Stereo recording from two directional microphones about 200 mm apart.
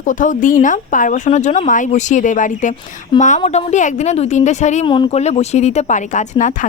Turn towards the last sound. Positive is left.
turn(degrees=40)  # may be behind; listen again after turning